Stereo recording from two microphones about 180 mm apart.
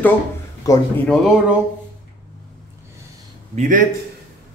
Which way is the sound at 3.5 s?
45° right (ahead or behind).